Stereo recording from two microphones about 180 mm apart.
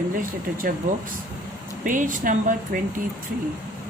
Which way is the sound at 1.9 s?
45° right (ahead or behind).